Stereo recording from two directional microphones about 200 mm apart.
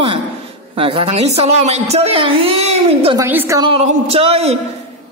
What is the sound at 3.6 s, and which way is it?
A woman's voice, 30° right (ahead or behind).